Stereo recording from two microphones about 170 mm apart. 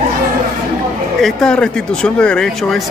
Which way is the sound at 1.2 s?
5° left (ahead or behind).